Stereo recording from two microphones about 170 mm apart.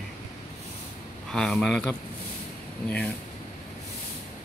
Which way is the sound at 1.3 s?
5° left (ahead or behind).